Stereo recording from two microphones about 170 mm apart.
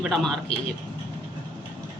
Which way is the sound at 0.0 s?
Centre (ahead or behind).